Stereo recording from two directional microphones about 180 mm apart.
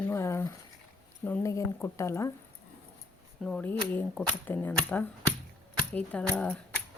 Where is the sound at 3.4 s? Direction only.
5° left (ahead or behind).